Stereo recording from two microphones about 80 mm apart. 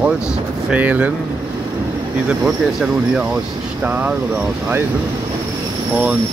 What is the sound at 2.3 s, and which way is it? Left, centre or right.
Speech, centre.